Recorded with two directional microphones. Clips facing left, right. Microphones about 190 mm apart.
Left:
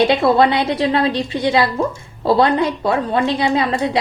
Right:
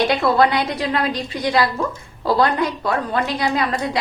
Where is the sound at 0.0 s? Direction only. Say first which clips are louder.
Left 3 dB; 25° left (ahead or behind).